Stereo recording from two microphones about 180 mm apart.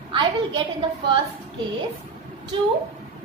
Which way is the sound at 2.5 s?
30° right (ahead or behind).